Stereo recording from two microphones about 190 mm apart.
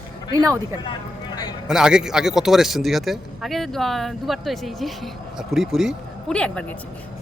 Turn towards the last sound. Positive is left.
turn(degrees=5)  # may be behind; listen again after turning